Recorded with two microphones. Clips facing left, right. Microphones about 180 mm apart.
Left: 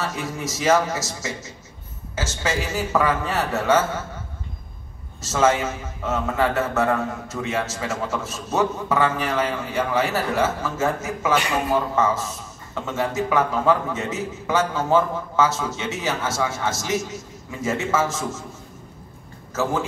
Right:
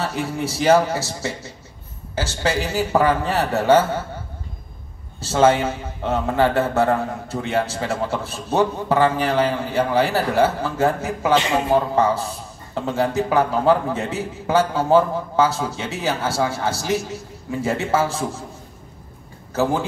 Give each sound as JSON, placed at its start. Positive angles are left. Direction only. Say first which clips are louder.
{"t": 0.0, "sound": "a man's voice", "louder": "right 4 dB", "side_deg": -30}
{"t": 5.2, "sound": "a man's voice", "louder": "right 3 dB", "side_deg": -30}
{"t": 19.5, "sound": "a man's voice", "louder": "right 3 dB", "side_deg": -30}